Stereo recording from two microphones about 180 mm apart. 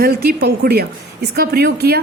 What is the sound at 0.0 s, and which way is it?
A woman's voice, 60° right (ahead or behind).